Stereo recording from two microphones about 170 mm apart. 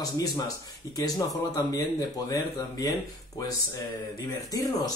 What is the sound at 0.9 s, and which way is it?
Speech, 20° left (ahead or behind).